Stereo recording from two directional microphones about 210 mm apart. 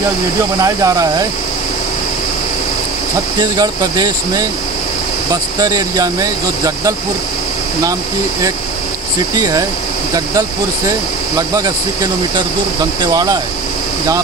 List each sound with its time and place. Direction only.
0.6 s speech: 15° right (ahead or behind)
3.3 s speech: 20° right (ahead or behind)
5.6 s speech: 20° right (ahead or behind)
9.4 s speech: 15° right (ahead or behind)
11.3 s speech: 15° right (ahead or behind)